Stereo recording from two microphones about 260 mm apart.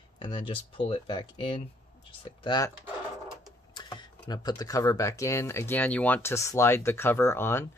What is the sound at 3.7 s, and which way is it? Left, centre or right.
Speech, centre.